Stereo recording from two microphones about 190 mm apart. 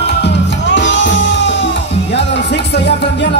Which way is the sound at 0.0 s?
65° left (ahead or behind).